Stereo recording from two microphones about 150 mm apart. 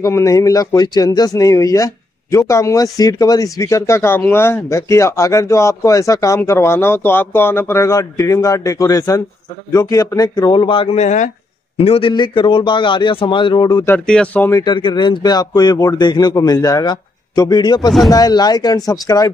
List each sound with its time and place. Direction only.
0.0 s a man's voice: 20° left (ahead or behind)
13.9 s speech: 5° left (ahead or behind)
14.5 s speech: 30° left (ahead or behind)